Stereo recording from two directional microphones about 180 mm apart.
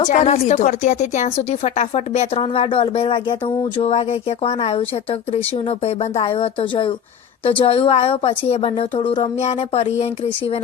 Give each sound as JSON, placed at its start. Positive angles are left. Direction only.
{"t": 0.0, "sound": "speech", "side_deg": 45}